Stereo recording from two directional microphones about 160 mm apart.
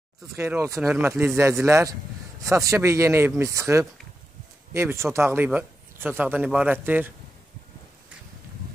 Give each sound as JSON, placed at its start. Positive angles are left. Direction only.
{"t": 0.4, "sound": "speech", "side_deg": -15}